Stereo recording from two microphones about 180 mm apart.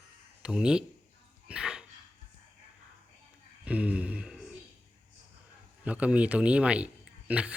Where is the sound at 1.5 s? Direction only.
5° right (ahead or behind).